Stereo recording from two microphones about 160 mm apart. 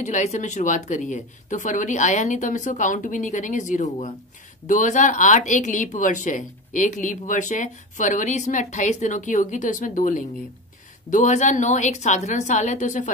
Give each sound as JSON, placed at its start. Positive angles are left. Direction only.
{"t": 0.0, "sound": "speech", "side_deg": 45}